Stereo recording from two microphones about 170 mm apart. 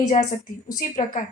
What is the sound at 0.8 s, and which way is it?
Speech, 55° left (ahead or behind).